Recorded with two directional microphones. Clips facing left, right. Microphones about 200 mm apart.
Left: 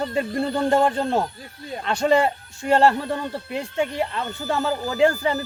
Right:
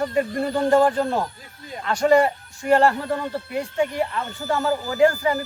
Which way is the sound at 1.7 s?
25° left (ahead or behind).